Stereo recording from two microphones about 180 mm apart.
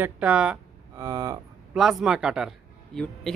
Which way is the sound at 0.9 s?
20° right (ahead or behind).